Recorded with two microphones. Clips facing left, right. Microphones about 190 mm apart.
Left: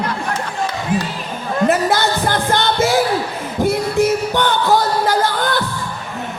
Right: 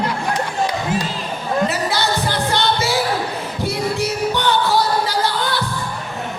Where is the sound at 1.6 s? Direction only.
50° left (ahead or behind).